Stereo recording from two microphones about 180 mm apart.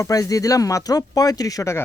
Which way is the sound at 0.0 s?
20° left (ahead or behind).